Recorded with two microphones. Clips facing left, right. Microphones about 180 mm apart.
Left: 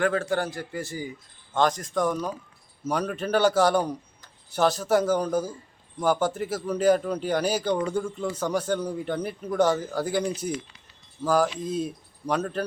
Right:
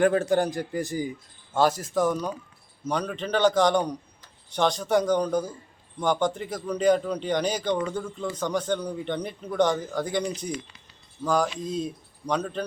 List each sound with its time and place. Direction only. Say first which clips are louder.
0.0 s a man's voice: right 4 dB; 15° right (ahead or behind); by 12.6 s 5° left (ahead or behind)